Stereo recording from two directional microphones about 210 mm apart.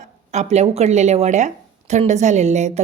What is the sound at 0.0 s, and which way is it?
Speech, 35° right (ahead or behind).